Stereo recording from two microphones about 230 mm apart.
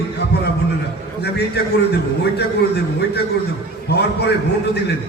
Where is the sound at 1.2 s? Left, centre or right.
Left.